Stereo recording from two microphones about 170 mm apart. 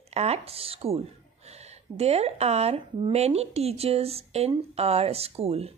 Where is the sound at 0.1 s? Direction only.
40° right (ahead or behind).